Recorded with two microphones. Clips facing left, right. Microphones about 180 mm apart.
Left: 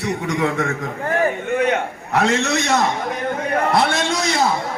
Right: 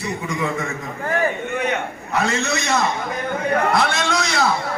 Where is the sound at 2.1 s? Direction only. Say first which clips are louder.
Left 4 dB; 80° left.